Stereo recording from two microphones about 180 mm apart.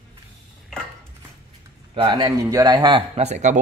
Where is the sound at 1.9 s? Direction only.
25° right (ahead or behind).